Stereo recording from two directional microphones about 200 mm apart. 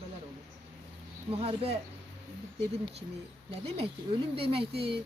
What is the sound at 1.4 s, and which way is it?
Speech, 30° right (ahead or behind).